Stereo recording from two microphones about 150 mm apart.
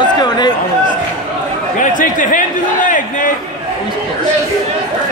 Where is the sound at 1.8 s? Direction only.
60° left (ahead or behind).